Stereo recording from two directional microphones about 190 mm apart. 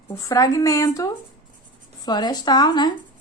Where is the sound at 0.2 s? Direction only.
20° left (ahead or behind).